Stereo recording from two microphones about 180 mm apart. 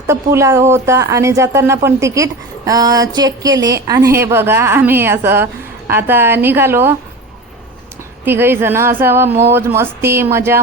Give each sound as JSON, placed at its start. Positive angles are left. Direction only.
{"t": 0.1, "sound": "speech", "side_deg": -15}
{"t": 8.2, "sound": "speech", "side_deg": -15}